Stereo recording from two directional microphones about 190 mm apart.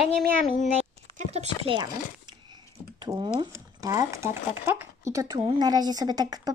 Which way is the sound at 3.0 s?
25° right (ahead or behind).